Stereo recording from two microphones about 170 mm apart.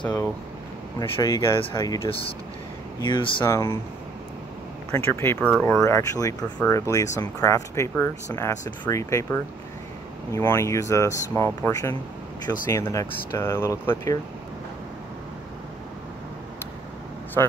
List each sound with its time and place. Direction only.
0.9 s speech: 25° left (ahead or behind)
3.4 s speech: 15° left (ahead or behind)
4.9 s speech: 15° left (ahead or behind)